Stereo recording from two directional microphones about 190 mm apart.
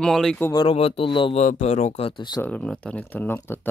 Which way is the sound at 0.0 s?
5° left (ahead or behind).